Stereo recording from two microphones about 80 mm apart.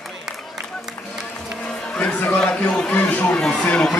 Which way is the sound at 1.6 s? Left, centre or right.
Centre.